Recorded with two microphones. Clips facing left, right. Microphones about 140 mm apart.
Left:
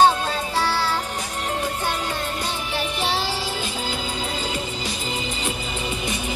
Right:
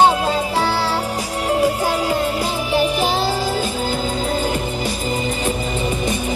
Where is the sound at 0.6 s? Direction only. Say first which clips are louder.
Right 4 dB; 35° right (ahead or behind).